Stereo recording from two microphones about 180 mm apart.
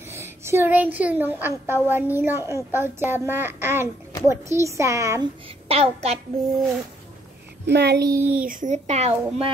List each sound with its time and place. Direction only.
0.1 s speech: 15° right (ahead or behind)
5.7 s a child's voice: 35° right (ahead or behind)
7.6 s a child's voice: 65° right (ahead or behind)
8.1 s speech: 10° right (ahead or behind)
8.5 s a woman's voice: 45° right (ahead or behind)